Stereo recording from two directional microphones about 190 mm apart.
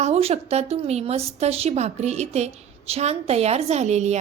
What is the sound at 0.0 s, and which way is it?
A woman's voice, 35° right (ahead or behind).